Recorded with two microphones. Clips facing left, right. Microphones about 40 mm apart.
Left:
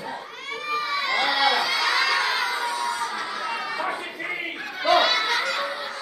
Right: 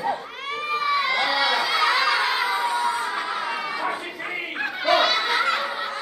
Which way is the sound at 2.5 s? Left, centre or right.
Right.